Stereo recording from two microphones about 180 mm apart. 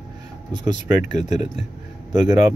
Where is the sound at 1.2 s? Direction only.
40° left (ahead or behind).